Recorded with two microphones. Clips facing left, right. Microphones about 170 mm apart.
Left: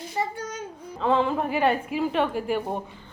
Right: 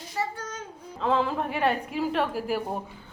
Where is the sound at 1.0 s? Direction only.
Centre (ahead or behind).